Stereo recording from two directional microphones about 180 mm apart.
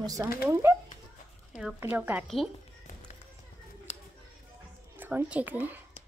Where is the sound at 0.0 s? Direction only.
20° right (ahead or behind).